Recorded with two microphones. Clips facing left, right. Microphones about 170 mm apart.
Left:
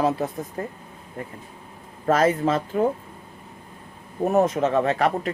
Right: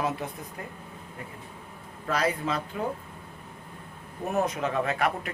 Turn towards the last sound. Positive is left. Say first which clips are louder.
# left 6 dB
turn(degrees=35)  # may be behind; listen again after turning